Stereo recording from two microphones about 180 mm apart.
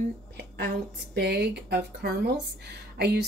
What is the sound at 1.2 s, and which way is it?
Speech, 65° right (ahead or behind).